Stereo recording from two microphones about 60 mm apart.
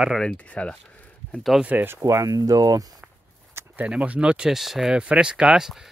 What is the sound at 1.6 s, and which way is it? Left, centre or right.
Speech, right.